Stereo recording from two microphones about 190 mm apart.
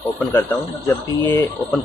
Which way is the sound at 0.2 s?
10° left (ahead or behind).